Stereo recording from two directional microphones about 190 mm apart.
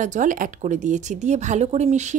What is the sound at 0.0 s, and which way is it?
A woman's voice, 40° right (ahead or behind).